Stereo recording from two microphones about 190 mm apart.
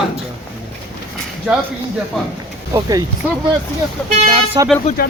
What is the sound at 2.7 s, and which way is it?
Speech, 20° right (ahead or behind).